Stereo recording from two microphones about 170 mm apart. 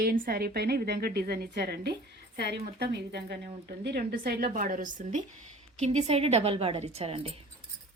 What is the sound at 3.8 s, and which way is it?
A woman's voice, 65° right (ahead or behind).